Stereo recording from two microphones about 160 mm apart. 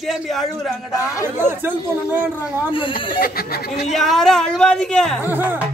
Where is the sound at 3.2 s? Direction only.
70° left (ahead or behind).